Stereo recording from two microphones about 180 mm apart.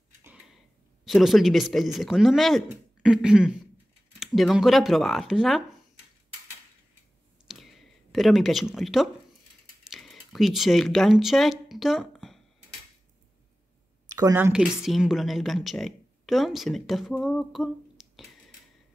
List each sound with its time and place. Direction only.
1.0 s speech: centre (ahead or behind)
7.4 s a sound: centre (ahead or behind)
9.8 s speech: centre (ahead or behind)
14.0 s a woman's voice: 20° right (ahead or behind); by 18.3 s centre (ahead or behind)